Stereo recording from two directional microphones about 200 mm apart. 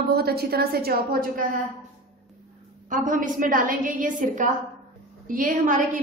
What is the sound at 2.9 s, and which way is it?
A woman's voice, 40° right (ahead or behind).